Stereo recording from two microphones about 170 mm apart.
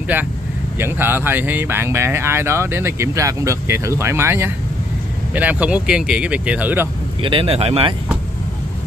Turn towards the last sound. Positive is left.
turn(degrees=-35)  # may be behind; listen again after turning